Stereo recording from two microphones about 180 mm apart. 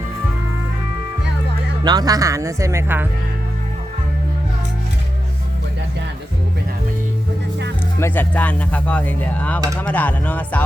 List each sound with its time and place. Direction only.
1.8 s speech: 20° right (ahead or behind)
7.9 s speech: 15° left (ahead or behind)